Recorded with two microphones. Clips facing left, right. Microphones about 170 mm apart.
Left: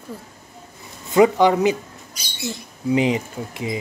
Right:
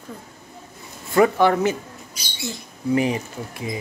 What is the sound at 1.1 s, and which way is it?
Speech, 15° left (ahead or behind).